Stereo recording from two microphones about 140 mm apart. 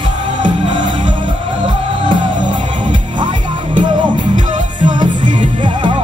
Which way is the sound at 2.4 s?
35° right (ahead or behind).